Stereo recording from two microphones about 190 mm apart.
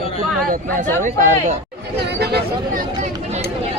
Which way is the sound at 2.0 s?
60° right (ahead or behind).